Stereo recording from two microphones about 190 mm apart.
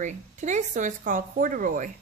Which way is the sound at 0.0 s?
40° right (ahead or behind).